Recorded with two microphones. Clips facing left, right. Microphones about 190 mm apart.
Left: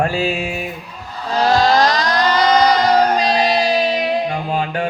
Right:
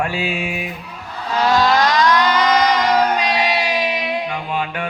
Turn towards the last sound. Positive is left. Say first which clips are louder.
# left 3 dB
turn(degrees=35)  # may be behind; listen again after turning